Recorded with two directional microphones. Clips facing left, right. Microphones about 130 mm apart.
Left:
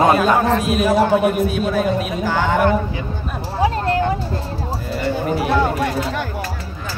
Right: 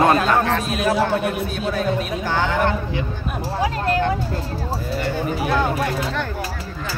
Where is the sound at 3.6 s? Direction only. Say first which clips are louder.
Left 4 dB; 30° left (ahead or behind).